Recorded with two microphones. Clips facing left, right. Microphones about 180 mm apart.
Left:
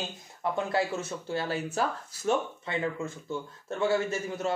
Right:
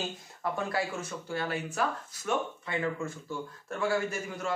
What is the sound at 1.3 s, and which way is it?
A man's voice, 30° left (ahead or behind).